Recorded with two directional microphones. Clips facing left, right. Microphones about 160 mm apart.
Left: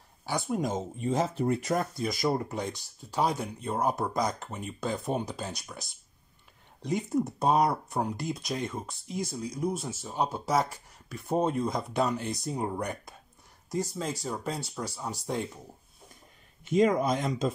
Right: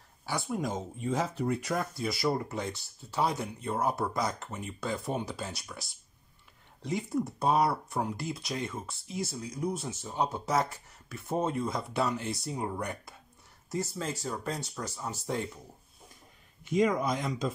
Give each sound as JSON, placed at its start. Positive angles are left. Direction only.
{"t": 0.2, "sound": "speech", "side_deg": 15}
{"t": 16.6, "sound": "speech", "side_deg": 25}